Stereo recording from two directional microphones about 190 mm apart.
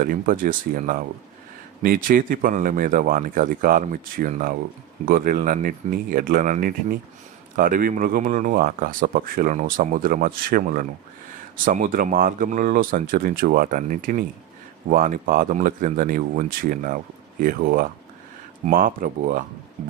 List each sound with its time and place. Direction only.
0.0 s speech: 45° right (ahead or behind)